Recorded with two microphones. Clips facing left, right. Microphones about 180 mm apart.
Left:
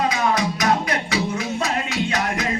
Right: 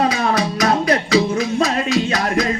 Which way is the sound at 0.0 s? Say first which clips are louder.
Right 3 dB; 35° right (ahead or behind).